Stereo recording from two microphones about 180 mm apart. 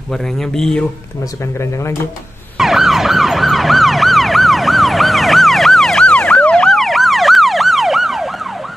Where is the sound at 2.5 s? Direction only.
Centre (ahead or behind).